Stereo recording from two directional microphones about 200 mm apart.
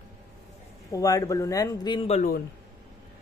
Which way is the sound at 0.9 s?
15° left (ahead or behind).